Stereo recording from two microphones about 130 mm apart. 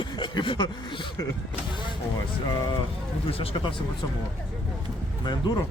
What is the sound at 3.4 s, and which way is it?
Speech, 45° left (ahead or behind).